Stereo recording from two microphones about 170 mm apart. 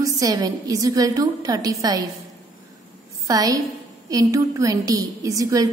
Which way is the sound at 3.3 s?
20° right (ahead or behind).